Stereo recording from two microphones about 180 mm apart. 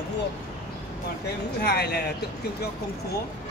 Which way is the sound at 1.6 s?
65° left (ahead or behind).